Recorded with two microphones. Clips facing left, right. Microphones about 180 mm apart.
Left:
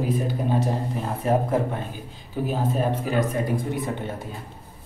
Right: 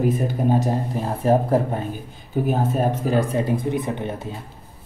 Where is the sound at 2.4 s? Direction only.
50° right (ahead or behind).